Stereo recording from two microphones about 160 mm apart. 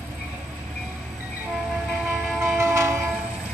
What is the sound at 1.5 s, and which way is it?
Train, 10° right (ahead or behind).